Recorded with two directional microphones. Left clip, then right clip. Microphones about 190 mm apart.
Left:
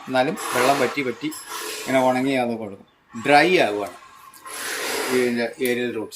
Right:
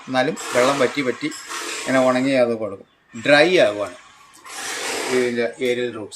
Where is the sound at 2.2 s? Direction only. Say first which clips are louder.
Right 5 dB; 30° right (ahead or behind).